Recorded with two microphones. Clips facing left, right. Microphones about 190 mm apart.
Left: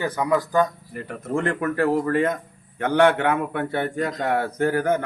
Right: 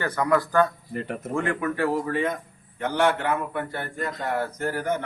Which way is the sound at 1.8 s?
45° left (ahead or behind).